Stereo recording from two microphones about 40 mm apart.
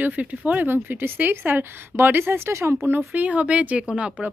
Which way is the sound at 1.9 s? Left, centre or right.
Right.